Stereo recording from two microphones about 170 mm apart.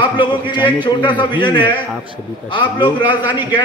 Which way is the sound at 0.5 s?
10° right (ahead or behind).